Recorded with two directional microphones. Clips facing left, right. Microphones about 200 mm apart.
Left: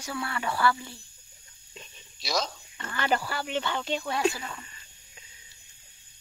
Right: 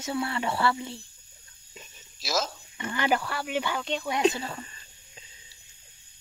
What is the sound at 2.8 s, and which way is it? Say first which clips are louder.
Speech: right 2 dB; 15° right (ahead or behind).